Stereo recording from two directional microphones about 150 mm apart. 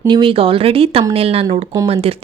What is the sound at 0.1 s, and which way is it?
Speech, 35° right (ahead or behind).